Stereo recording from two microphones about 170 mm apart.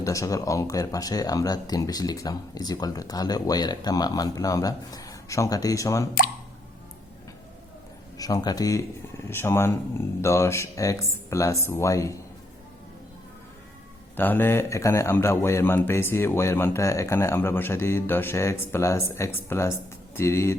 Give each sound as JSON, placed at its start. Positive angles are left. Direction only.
{"t": 0.0, "sound": "speech", "side_deg": 20}
{"t": 8.2, "sound": "speech", "side_deg": 20}
{"t": 14.2, "sound": "speech", "side_deg": 10}